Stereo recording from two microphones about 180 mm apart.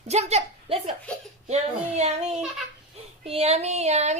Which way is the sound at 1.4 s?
40° right (ahead or behind).